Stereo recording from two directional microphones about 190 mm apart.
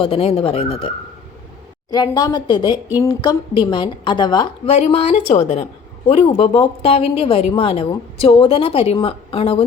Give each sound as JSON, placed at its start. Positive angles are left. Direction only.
{"t": 0.0, "sound": "speech", "side_deg": 30}